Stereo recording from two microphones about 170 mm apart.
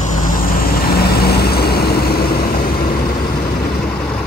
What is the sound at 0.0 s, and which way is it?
Vehicle, 50° left (ahead or behind).